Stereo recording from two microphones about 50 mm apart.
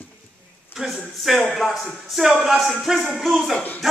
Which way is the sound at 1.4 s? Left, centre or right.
Centre.